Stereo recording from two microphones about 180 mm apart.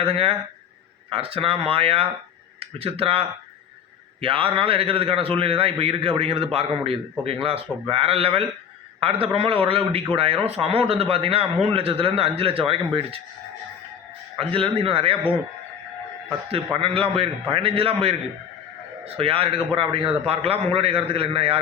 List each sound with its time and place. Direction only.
0.0 s a man's voice: 30° right (ahead or behind)
14.3 s a man's voice: 30° right (ahead or behind)
16.7 s a man's voice: 30° right (ahead or behind)